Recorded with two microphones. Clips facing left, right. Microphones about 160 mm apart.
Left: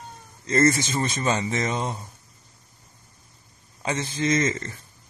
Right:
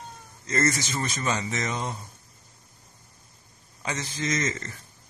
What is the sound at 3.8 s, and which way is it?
Speech, 30° left (ahead or behind).